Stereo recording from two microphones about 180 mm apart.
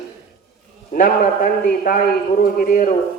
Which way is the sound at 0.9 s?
50° left (ahead or behind).